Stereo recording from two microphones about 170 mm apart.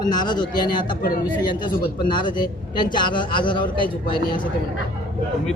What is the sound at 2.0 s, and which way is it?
A man's voice, 25° left (ahead or behind).